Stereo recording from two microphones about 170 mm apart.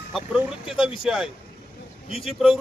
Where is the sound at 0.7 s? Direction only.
5° right (ahead or behind).